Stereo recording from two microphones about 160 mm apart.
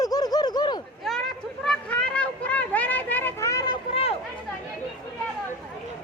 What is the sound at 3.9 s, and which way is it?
Chatter, 35° left (ahead or behind).